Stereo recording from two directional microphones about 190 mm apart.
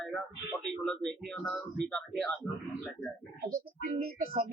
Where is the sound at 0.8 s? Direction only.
5° left (ahead or behind).